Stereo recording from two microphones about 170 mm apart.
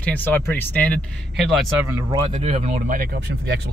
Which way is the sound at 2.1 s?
30° right (ahead or behind).